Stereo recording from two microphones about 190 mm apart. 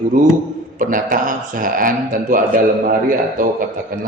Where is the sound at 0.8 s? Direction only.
45° right (ahead or behind).